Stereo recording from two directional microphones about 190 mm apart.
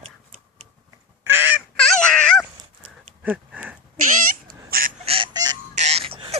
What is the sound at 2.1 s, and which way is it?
Dog, 5° left (ahead or behind).